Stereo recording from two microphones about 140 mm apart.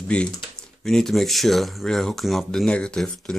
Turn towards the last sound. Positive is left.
turn(degrees=5)  # may be behind; listen again after turning